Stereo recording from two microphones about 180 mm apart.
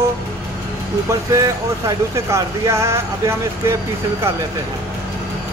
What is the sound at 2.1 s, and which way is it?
Speech, 15° right (ahead or behind).